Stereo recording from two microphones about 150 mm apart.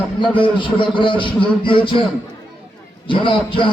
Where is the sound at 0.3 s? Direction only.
35° left (ahead or behind).